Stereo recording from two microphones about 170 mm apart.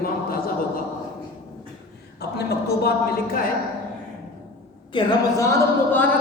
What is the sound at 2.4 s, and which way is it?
Speech, 70° left (ahead or behind).